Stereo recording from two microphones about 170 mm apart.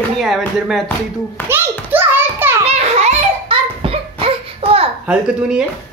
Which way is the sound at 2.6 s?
40° right (ahead or behind).